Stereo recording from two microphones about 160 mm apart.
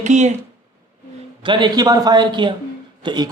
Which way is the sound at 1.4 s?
30° right (ahead or behind).